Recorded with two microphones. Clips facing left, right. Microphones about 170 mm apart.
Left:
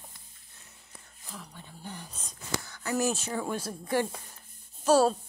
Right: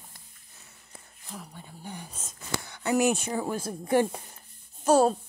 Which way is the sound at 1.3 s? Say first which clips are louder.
Right 3 dB; 10° right (ahead or behind).